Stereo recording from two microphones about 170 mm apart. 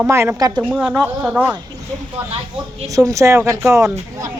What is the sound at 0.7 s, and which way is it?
Speech, 5° right (ahead or behind).